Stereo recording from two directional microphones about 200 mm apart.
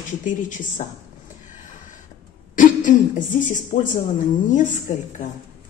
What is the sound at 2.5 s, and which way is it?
A woman's voice, 40° left (ahead or behind).